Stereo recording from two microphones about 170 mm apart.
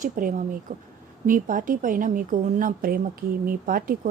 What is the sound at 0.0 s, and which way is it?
A woman's voice, 50° right (ahead or behind).